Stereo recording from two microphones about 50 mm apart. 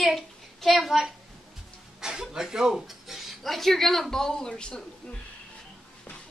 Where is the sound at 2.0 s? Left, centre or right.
Centre.